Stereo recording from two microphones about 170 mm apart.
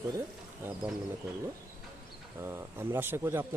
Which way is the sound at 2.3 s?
15° right (ahead or behind).